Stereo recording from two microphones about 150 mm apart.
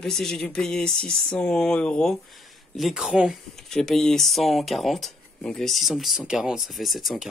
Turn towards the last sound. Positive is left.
turn(degrees=0)  # may be behind; listen again after turning